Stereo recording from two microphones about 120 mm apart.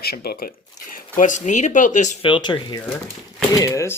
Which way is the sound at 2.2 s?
40° left (ahead or behind).